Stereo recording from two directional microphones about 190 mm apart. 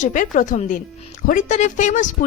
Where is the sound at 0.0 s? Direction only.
40° left (ahead or behind).